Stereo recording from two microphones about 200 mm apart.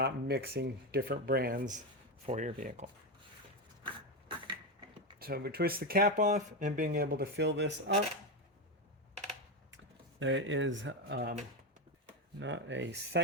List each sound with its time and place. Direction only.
0.0 s speech: 55° right (ahead or behind)
3.8 s a sound: 25° right (ahead or behind)
5.2 s speech: 50° right (ahead or behind)
9.7 s speech: 70° right (ahead or behind)
12.4 s speech: 65° right (ahead or behind)